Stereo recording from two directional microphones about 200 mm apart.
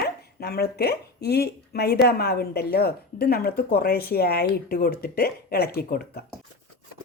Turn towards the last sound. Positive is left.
turn(degrees=50)  # may be behind; listen again after turning